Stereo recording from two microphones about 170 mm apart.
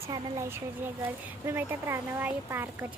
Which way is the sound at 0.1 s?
15° right (ahead or behind).